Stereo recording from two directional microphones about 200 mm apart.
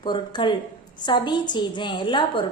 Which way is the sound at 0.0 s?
25° left (ahead or behind).